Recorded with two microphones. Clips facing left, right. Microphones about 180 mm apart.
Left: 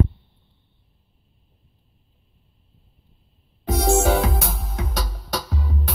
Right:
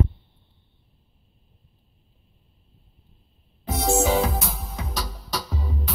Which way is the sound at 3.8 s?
55° left (ahead or behind).